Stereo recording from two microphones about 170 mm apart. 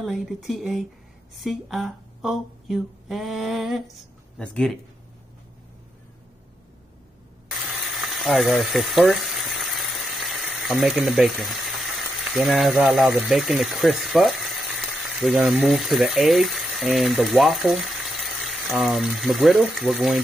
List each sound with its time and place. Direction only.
0.0 s speech: centre (ahead or behind)
7.9 s speech: centre (ahead or behind)